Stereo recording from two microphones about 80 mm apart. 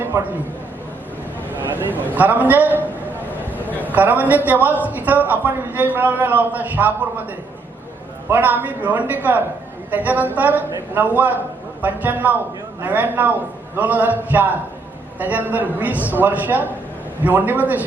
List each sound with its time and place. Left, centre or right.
1.5 s a man's voice: right
3.8 s a man's voice: right
8.3 s a man's voice: right